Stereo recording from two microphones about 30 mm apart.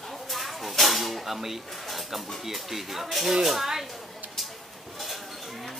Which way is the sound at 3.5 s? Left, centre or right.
Centre.